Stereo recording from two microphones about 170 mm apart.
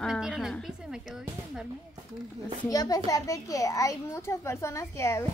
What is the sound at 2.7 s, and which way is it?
A child's voice, 20° left (ahead or behind).